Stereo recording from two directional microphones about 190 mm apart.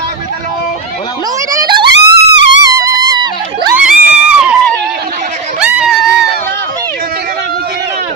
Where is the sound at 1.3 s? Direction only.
20° right (ahead or behind).